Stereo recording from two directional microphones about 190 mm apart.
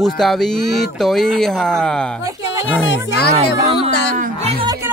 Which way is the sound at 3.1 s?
60° left (ahead or behind).